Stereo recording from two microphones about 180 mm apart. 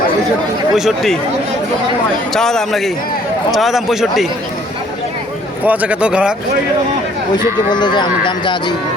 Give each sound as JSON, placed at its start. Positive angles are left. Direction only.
{"t": 0.7, "sound": "a man's voice", "side_deg": 0}
{"t": 2.3, "sound": "a man's voice", "side_deg": 0}
{"t": 5.6, "sound": "speech", "side_deg": -10}
{"t": 7.7, "sound": "speech", "side_deg": 25}